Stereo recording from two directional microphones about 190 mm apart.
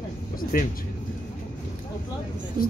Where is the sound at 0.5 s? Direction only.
50° left (ahead or behind).